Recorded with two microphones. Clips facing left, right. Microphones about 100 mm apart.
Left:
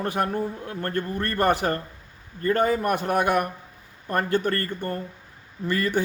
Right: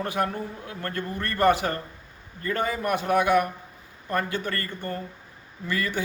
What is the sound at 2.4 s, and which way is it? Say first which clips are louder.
Speech: left 6 dB; 40° left (ahead or behind).